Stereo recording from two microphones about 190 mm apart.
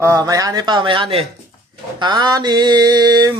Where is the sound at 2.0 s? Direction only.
25° right (ahead or behind).